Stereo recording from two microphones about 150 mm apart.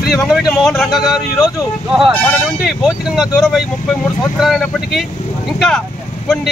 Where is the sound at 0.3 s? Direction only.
Centre (ahead or behind).